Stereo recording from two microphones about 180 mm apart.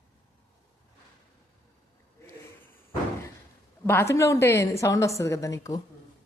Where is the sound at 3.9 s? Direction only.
15° left (ahead or behind).